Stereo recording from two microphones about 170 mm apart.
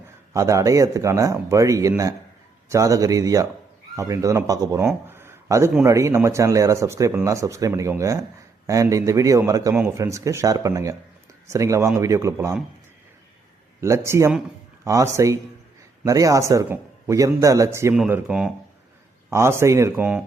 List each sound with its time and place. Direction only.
0.3 s a man's voice: 20° right (ahead or behind)
5.0 s a sound: 15° right (ahead or behind)
5.8 s a man's voice: 20° right (ahead or behind)
13.8 s a man's voice: 15° right (ahead or behind)
17.9 s speech: 5° right (ahead or behind)
19.3 s speech: 15° right (ahead or behind)